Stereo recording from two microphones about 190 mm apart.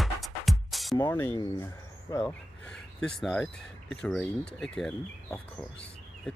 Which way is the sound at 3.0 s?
Centre (ahead or behind).